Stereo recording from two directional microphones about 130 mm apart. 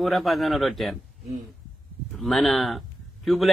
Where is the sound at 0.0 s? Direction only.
Centre (ahead or behind).